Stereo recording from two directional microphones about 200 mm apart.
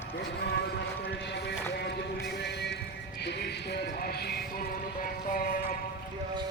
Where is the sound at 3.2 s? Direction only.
55° left (ahead or behind).